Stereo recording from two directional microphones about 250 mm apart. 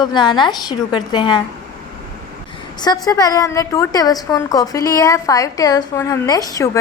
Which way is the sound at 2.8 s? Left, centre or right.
Centre.